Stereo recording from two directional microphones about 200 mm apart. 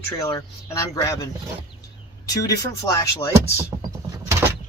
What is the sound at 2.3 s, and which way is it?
Speech, 20° left (ahead or behind).